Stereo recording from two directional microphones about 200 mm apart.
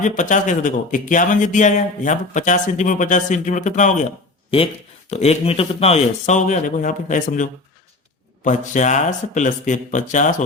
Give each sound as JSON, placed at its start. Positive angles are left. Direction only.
{"t": 0.2, "sound": "a man's voice", "side_deg": 40}